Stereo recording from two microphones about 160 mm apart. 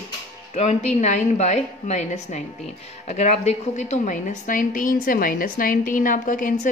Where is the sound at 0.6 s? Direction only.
45° left (ahead or behind).